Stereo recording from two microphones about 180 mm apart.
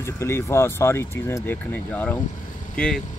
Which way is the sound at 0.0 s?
15° left (ahead or behind).